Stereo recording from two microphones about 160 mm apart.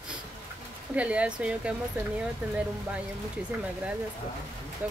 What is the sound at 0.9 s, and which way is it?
Speech, 10° right (ahead or behind).